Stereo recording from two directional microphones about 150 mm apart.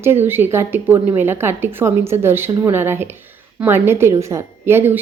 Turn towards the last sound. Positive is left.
turn(degrees=-15)  # may be behind; listen again after turning